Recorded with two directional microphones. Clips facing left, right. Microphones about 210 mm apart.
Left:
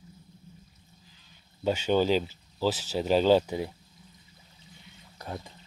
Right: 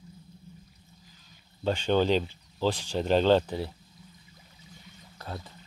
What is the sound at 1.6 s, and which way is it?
Speech, 10° left (ahead or behind).